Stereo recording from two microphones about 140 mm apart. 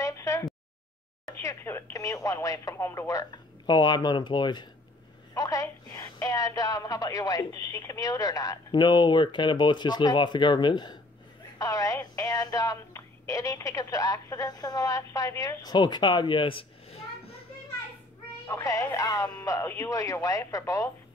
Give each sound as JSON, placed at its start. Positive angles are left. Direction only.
{"t": 0.0, "sound": "a sound", "side_deg": 25}
{"t": 1.4, "sound": "a woman's voice", "side_deg": 20}
{"t": 18.5, "sound": "a woman's voice", "side_deg": 25}